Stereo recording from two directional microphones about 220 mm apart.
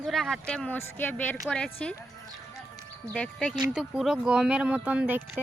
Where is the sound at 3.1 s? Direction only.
5° left (ahead or behind).